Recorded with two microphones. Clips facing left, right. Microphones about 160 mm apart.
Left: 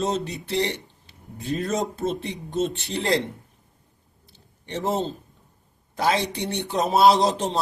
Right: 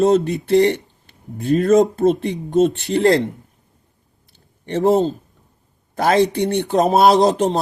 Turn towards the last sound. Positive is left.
turn(degrees=-50)  # may be behind; listen again after turning